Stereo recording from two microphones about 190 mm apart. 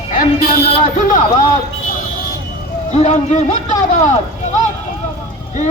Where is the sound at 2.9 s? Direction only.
35° left (ahead or behind).